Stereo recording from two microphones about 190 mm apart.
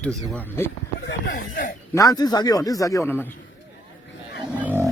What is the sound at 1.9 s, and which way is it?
Speech, 20° left (ahead or behind).